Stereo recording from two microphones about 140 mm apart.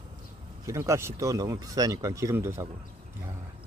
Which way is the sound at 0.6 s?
20° right (ahead or behind).